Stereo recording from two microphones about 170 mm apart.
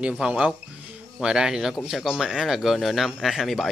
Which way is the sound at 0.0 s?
5° right (ahead or behind).